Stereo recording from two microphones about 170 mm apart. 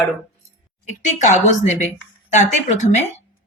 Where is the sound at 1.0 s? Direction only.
45° left (ahead or behind).